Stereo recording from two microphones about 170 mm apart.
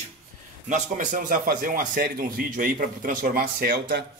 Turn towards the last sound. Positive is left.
turn(degrees=-80)